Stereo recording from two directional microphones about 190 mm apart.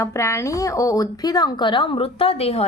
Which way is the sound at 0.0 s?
15° left (ahead or behind).